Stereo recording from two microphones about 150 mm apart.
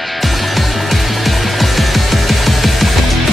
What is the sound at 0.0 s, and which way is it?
Music, centre (ahead or behind).